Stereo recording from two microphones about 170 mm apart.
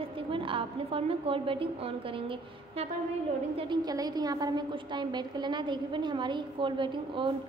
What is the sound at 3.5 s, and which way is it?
A woman's voice, 30° right (ahead or behind).